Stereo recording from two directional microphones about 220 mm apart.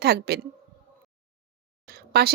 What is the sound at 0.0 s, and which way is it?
Speech, 45° right (ahead or behind).